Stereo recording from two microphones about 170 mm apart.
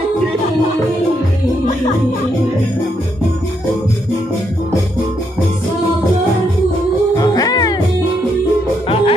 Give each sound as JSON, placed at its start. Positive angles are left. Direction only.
{"t": 7.2, "sound": "music", "side_deg": 20}
{"t": 8.8, "sound": "music", "side_deg": 30}